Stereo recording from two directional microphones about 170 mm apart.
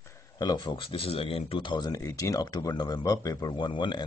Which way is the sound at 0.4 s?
25° left (ahead or behind).